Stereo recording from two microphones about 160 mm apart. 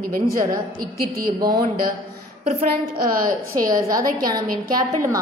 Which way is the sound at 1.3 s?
25° right (ahead or behind).